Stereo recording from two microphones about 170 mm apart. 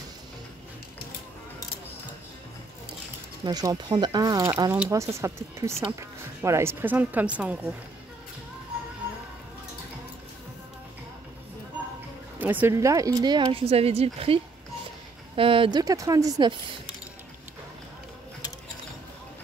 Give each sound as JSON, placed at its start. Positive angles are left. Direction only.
{"t": 3.4, "sound": "speech", "side_deg": -25}
{"t": 12.4, "sound": "speech", "side_deg": -10}
{"t": 15.8, "sound": "speech", "side_deg": -20}